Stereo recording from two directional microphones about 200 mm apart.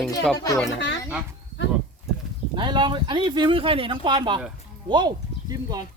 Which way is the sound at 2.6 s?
25° right (ahead or behind).